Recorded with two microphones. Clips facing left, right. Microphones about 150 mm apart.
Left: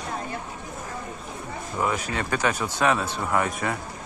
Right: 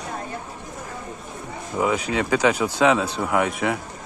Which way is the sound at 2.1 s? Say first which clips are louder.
Right 6 dB; 90° right.